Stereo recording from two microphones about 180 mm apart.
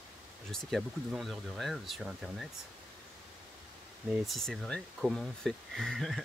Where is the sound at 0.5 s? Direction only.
Centre (ahead or behind).